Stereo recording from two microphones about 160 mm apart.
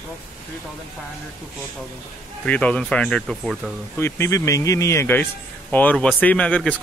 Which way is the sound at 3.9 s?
15° left (ahead or behind).